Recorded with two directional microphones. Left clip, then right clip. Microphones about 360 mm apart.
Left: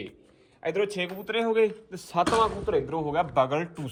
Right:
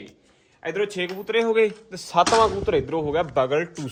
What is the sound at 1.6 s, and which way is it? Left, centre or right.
Speech, right.